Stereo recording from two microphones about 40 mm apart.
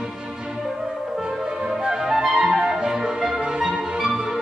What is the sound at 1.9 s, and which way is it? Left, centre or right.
Flute, centre.